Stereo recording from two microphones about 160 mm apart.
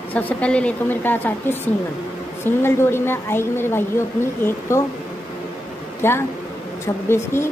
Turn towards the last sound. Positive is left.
turn(degrees=15)  # may be behind; listen again after turning